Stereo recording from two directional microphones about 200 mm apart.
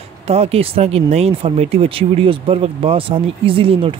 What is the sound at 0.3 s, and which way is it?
Speech, 30° right (ahead or behind).